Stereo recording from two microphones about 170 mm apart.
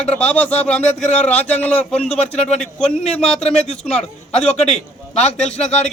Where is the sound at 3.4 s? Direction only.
40° left (ahead or behind).